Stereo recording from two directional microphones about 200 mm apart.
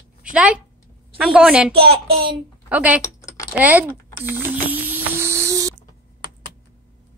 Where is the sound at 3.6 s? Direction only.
10° right (ahead or behind).